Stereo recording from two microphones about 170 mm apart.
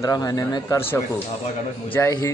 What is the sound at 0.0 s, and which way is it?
Speech, 20° left (ahead or behind).